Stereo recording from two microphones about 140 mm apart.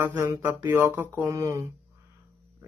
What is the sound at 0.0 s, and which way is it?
Speech, 15° right (ahead or behind).